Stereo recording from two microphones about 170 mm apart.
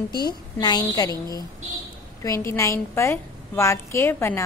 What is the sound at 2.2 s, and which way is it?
A woman's voice, 15° left (ahead or behind).